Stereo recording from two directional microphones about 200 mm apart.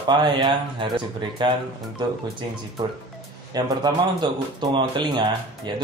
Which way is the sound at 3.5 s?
20° right (ahead or behind).